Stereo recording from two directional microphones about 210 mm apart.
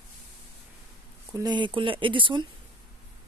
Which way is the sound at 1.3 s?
20° right (ahead or behind).